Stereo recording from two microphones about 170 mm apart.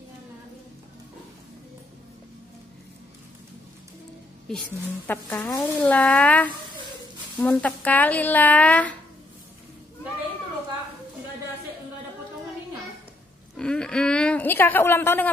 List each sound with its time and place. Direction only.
4.5 s speech: 5° left (ahead or behind)
5.9 s speech: 10° left (ahead or behind)
13.6 s a woman's voice: 5° left (ahead or behind)